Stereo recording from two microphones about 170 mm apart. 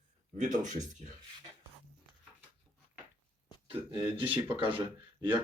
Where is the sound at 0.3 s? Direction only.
50° right (ahead or behind).